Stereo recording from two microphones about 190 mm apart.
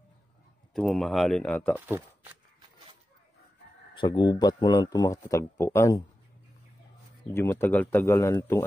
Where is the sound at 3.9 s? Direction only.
25° left (ahead or behind).